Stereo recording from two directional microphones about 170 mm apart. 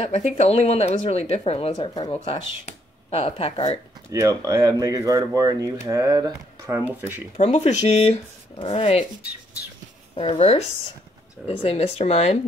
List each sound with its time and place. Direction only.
0.0 s speech: 40° left (ahead or behind)
4.1 s speech: 20° right (ahead or behind)
7.3 s speech: 40° left (ahead or behind)
10.1 s speech: 35° left (ahead or behind)